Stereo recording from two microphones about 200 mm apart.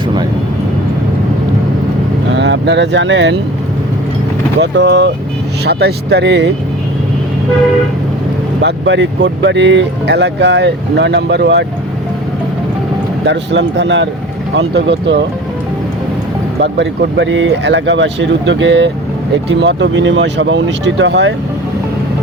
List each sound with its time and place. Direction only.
2.3 s speech: 65° right (ahead or behind)
4.6 s speech: 60° right (ahead or behind)
8.6 s speech: 65° right (ahead or behind)
13.2 s speech: 60° right (ahead or behind)
16.6 s speech: 60° right (ahead or behind)